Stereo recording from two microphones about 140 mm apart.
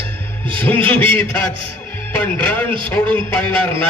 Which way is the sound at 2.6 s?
35° right (ahead or behind).